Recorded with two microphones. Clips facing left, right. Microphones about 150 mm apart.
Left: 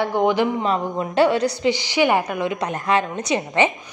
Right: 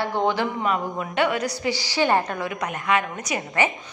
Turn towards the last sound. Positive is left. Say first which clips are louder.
# left 5 dB
turn(degrees=25)  # may be behind; listen again after turning